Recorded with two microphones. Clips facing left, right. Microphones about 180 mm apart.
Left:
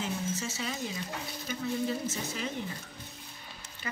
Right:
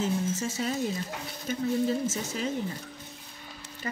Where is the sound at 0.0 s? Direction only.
45° right (ahead or behind).